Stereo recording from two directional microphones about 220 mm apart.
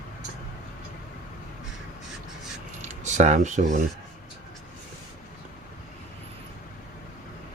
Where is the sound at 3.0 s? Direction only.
30° right (ahead or behind).